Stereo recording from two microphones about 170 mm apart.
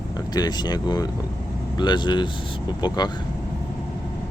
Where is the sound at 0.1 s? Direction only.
25° left (ahead or behind).